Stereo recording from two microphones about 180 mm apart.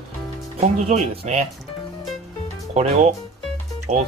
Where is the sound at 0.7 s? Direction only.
35° right (ahead or behind).